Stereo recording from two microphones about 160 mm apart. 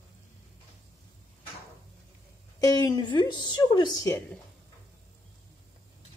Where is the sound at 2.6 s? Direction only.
25° left (ahead or behind).